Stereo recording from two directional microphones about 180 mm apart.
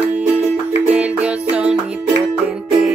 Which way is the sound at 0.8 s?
10° right (ahead or behind).